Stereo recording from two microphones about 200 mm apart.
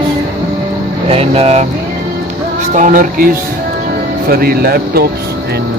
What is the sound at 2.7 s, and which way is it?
Speech, 40° right (ahead or behind).